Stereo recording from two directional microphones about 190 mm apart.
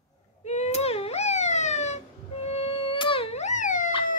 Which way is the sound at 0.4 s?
35° left (ahead or behind).